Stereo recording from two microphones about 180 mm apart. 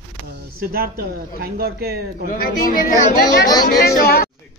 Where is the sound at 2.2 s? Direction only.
50° left (ahead or behind).